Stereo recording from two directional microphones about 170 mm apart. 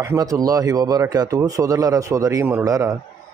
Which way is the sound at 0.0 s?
20° right (ahead or behind).